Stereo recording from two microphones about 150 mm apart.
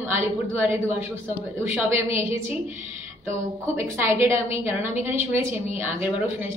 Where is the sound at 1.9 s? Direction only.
15° right (ahead or behind).